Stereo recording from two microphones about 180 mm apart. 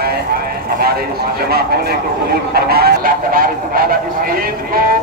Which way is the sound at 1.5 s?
60° right (ahead or behind).